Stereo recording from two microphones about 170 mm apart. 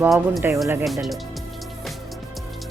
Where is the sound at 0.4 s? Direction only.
10° right (ahead or behind).